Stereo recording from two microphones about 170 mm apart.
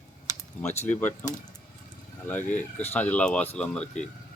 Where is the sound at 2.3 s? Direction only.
10° left (ahead or behind).